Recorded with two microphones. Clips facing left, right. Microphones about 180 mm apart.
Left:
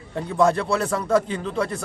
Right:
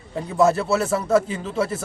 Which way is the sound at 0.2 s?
5° right (ahead or behind).